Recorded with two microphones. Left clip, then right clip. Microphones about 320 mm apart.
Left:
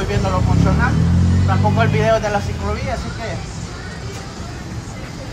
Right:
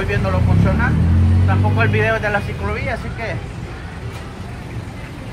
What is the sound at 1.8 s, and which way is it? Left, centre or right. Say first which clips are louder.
Speech: left 1 dB; centre.